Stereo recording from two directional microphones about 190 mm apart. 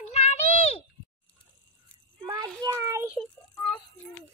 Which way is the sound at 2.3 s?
20° right (ahead or behind).